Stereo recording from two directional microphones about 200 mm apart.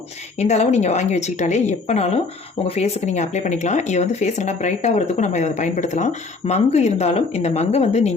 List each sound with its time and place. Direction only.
0.3 s speech: 35° left (ahead or behind)